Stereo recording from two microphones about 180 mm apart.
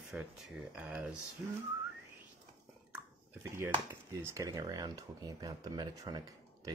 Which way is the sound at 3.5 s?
15° right (ahead or behind).